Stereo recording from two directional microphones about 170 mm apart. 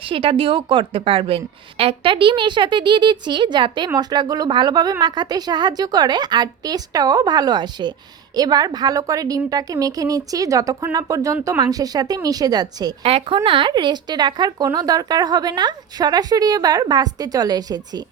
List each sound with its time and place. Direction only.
0.0 s a woman's voice: 30° right (ahead or behind)
13.0 s a woman's voice: 35° right (ahead or behind)